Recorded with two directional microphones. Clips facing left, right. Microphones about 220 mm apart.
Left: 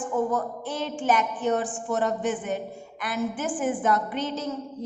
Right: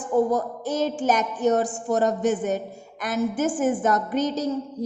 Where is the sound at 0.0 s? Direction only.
40° right (ahead or behind).